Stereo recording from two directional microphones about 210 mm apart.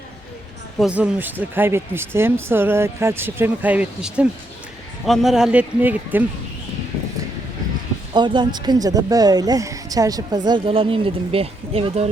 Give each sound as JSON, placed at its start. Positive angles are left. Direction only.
{"t": 0.8, "sound": "a man's voice", "side_deg": -5}
{"t": 8.1, "sound": "speech", "side_deg": -20}